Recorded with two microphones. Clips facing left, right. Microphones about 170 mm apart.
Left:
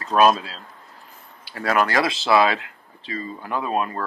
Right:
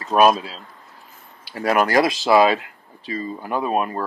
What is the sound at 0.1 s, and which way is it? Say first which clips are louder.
Speech: right 1 dB; 15° right (ahead or behind).